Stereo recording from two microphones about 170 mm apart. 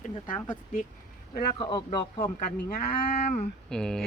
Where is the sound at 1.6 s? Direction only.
25° left (ahead or behind).